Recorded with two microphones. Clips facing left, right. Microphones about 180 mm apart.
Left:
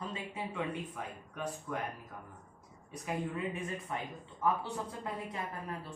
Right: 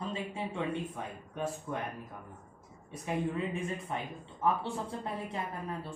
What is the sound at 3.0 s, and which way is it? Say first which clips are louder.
Speech: right 3 dB; 25° right (ahead or behind).